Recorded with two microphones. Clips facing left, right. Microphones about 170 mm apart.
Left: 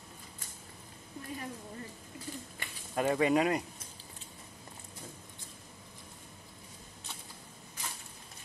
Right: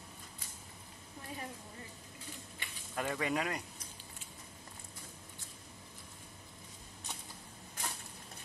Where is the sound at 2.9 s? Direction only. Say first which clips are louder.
Left 8 dB; 25° left (ahead or behind).